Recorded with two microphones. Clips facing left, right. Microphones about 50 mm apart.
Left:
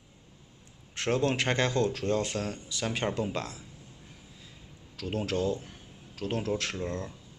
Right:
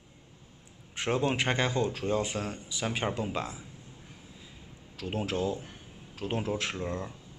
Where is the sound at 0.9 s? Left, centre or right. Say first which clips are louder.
Left 1 dB; centre.